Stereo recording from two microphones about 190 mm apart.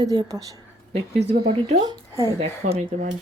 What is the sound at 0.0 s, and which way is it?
Speech, 20° right (ahead or behind).